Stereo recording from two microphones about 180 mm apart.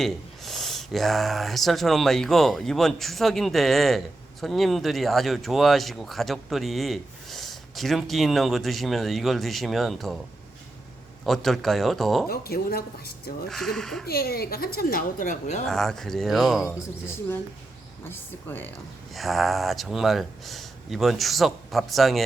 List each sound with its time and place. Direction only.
0.0 s speech: centre (ahead or behind)
11.3 s speech: centre (ahead or behind)
12.3 s a woman's voice: 55° left (ahead or behind)
13.5 s speech: centre (ahead or behind)
14.0 s a woman's voice: 60° left (ahead or behind)
15.6 s speech: centre (ahead or behind)
18.1 s speech: 10° left (ahead or behind)
19.1 s speech: centre (ahead or behind)